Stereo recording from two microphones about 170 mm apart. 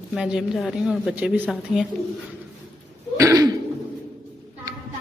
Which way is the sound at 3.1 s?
20° right (ahead or behind).